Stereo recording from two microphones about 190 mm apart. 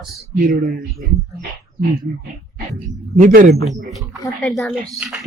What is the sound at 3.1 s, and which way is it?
Speech, 45° right (ahead or behind).